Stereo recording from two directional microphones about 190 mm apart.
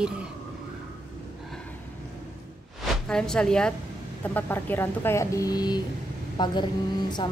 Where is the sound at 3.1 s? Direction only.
5° left (ahead or behind).